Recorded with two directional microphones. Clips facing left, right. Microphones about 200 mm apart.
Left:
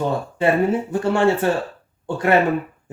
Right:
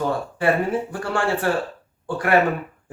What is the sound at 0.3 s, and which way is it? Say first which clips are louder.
Speech: left 3 dB; 25° left (ahead or behind).